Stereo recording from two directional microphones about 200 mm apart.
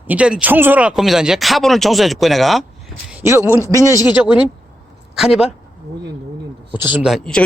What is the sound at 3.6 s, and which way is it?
Speech, 15° right (ahead or behind).